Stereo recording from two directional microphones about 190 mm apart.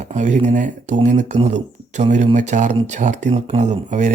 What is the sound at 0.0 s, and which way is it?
Speech, 40° right (ahead or behind).